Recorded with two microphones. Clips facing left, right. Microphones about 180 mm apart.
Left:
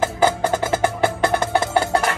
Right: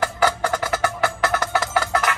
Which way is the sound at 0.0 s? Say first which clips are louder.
Left 3 dB; 25° left (ahead or behind).